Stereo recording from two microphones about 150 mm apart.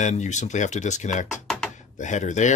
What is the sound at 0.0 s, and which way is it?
Speech, 50° left (ahead or behind).